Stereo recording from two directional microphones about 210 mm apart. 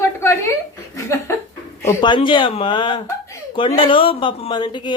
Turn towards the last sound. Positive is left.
turn(degrees=20)  # may be behind; listen again after turning